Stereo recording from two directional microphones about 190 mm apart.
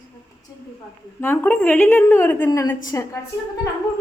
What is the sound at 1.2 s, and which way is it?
A woman's voice, 10° left (ahead or behind).